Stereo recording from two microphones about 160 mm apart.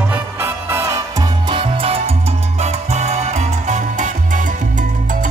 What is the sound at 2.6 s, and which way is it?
Music, 45° right (ahead or behind).